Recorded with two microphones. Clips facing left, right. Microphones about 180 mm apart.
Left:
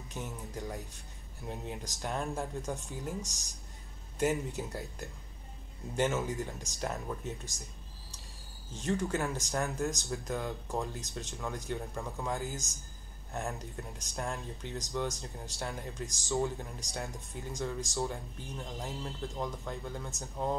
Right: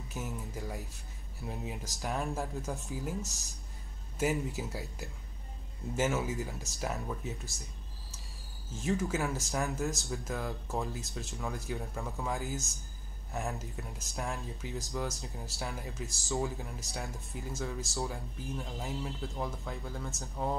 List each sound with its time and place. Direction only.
0.1 s speech: 5° right (ahead or behind)
8.7 s speech: centre (ahead or behind)